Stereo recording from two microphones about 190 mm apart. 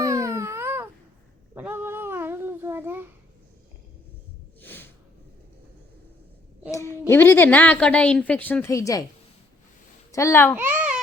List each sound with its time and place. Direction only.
0.0 s a sound: 15° right (ahead or behind)
4.6 s snort: 10° left (ahead or behind)
6.7 s a sound: 15° left (ahead or behind)
7.1 s a woman's voice: 10° left (ahead or behind)
10.1 s a child's voice: 15° left (ahead or behind)
10.5 s babbling: 10° right (ahead or behind)